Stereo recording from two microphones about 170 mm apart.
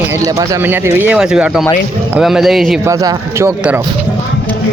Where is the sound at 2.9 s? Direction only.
20° right (ahead or behind).